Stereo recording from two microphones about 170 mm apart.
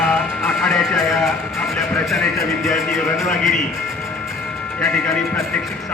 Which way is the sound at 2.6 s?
Centre (ahead or behind).